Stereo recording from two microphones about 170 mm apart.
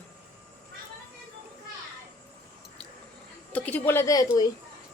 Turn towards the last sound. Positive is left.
turn(degrees=20)  # may be behind; listen again after turning